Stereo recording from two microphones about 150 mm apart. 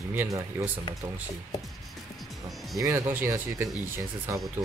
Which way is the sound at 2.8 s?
15° right (ahead or behind).